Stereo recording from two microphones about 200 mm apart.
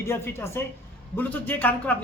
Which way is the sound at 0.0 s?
15° left (ahead or behind).